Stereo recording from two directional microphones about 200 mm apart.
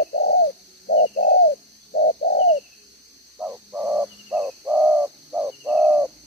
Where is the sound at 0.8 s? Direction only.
50° left (ahead or behind).